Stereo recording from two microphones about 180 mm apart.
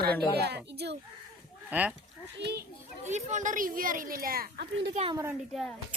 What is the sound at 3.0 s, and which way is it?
A woman's voice, 40° right (ahead or behind).